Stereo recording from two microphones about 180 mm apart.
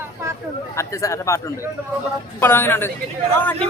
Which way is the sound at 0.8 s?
15° left (ahead or behind).